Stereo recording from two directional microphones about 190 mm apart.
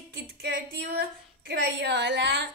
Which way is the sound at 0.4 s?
60° right (ahead or behind).